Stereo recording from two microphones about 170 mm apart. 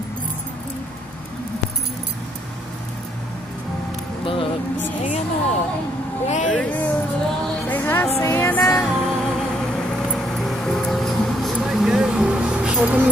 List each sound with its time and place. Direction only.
4.2 s music: 30° left (ahead or behind)
5.0 s speech: 45° left (ahead or behind)
6.5 s music: 10° left (ahead or behind); by 13.1 s 10° right (ahead or behind)